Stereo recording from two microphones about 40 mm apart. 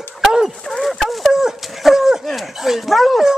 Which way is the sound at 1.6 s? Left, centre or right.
Centre.